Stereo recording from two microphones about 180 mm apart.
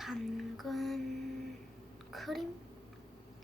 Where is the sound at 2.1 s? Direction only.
Centre (ahead or behind).